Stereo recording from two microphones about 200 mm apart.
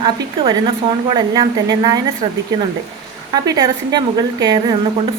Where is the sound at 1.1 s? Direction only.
20° right (ahead or behind).